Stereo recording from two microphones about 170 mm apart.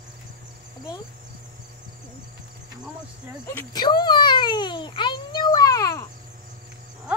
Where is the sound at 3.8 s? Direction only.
25° left (ahead or behind).